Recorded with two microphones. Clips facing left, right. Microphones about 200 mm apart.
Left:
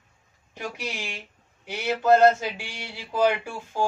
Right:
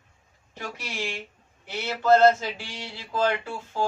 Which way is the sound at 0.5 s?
15° left (ahead or behind).